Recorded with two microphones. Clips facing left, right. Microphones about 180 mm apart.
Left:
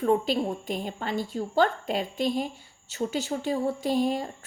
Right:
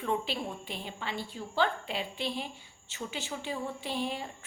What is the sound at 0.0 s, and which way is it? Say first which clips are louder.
A woman's voice: left 9 dB; 40° left (ahead or behind).